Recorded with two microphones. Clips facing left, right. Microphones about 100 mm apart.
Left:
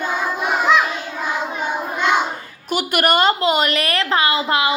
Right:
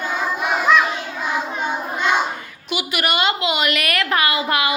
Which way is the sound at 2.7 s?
45° left (ahead or behind).